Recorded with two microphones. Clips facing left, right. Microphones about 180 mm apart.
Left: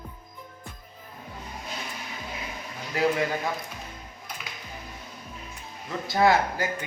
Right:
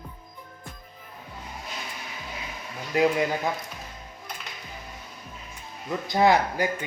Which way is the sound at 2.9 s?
20° right (ahead or behind).